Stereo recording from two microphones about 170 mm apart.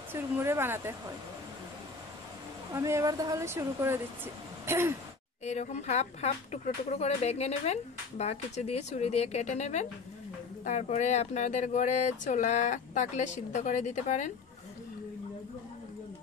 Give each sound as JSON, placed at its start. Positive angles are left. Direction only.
{"t": 0.1, "sound": "speech", "side_deg": -15}
{"t": 2.7, "sound": "speech", "side_deg": -20}
{"t": 5.4, "sound": "speech", "side_deg": 40}